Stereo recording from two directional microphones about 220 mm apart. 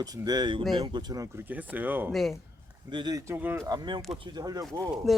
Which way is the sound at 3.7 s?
20° right (ahead or behind).